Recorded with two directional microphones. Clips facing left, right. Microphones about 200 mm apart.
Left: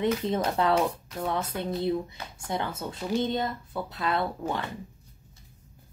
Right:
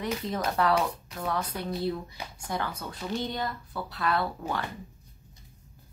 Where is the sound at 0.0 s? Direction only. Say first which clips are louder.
Left 5 dB; 25° left (ahead or behind).